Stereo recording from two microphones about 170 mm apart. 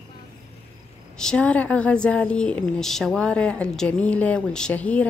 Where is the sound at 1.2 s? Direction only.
5° left (ahead or behind).